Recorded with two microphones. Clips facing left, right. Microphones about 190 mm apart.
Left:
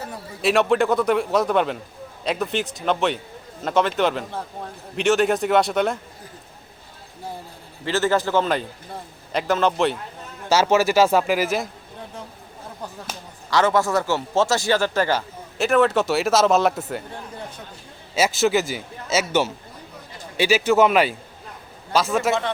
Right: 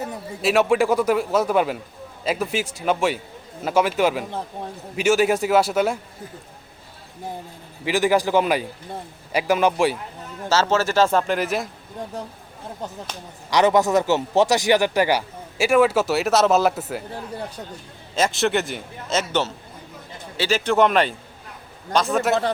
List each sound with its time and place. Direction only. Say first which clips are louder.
0.4 s a man's voice: even; 5° right (ahead or behind)
7.9 s speech: right 2 dB; 15° right (ahead or behind)
10.5 s speech: left 2 dB; 10° left (ahead or behind)
12.8 s speech: right 1 dB; 20° right (ahead or behind); by 17.0 s centre (ahead or behind)
18.1 s a man's voice: left 1 dB; 5° left (ahead or behind)